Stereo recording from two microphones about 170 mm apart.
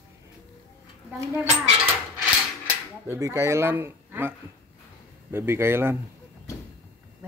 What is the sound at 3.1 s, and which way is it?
Speech, 15° right (ahead or behind).